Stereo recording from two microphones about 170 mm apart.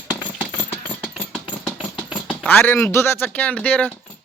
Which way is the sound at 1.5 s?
Centre (ahead or behind).